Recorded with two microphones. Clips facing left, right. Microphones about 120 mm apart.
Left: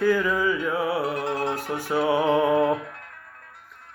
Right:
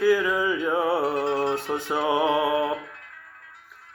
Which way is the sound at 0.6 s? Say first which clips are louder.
Right 2 dB; 25° right (ahead or behind).